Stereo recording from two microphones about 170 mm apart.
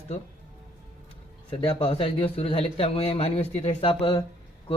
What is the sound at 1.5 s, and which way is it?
Speech, 30° left (ahead or behind).